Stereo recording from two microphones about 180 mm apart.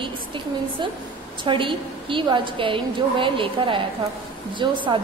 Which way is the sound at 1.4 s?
30° right (ahead or behind).